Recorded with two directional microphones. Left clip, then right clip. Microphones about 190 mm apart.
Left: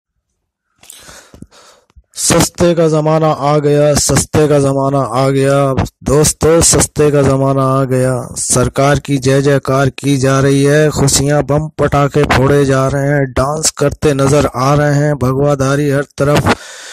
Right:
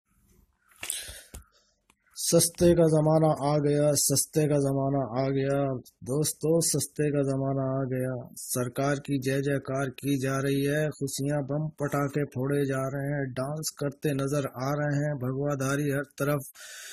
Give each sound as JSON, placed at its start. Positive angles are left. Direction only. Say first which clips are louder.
{"t": 2.5, "sound": "speech", "louder": "left 11 dB", "side_deg": 40}
{"t": 6.9, "sound": "speech", "louder": "left 17 dB", "side_deg": 40}